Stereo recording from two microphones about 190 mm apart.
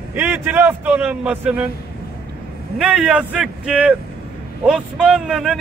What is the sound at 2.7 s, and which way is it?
A man's voice, 5° right (ahead or behind).